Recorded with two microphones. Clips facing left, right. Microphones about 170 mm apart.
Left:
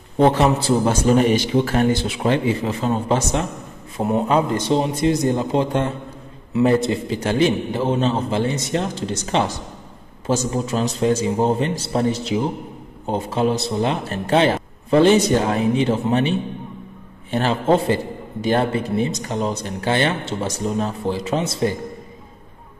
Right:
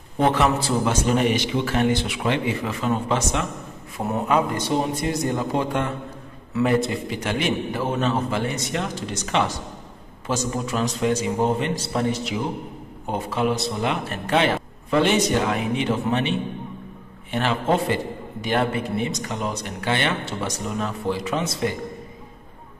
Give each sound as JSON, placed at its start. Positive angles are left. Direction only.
{"t": 0.2, "sound": "a man's voice", "side_deg": 30}